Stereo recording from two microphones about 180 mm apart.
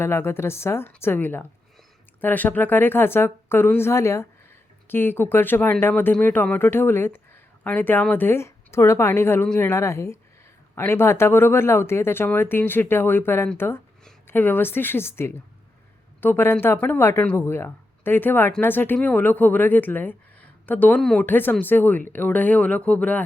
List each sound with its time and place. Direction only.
0.0 s speech: 15° left (ahead or behind)